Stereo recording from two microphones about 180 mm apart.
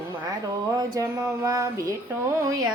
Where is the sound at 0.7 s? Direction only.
20° right (ahead or behind).